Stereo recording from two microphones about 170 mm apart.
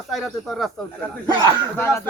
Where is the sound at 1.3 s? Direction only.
25° right (ahead or behind).